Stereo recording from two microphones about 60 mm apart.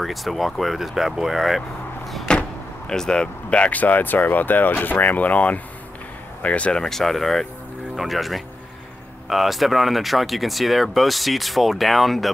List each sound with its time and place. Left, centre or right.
0.0 s speech: centre
2.3 s vehicle: centre
2.9 s speech: centre